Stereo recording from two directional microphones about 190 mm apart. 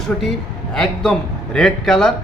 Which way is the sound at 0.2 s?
Centre (ahead or behind).